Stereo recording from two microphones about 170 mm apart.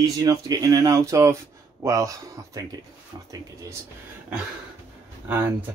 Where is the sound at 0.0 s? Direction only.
20° right (ahead or behind).